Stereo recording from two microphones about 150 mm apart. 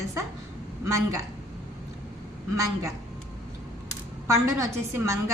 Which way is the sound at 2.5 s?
20° right (ahead or behind).